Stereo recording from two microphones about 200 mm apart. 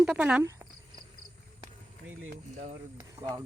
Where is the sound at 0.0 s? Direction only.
5° right (ahead or behind).